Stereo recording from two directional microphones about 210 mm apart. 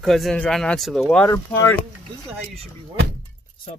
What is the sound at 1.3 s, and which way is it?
Speech, 15° left (ahead or behind).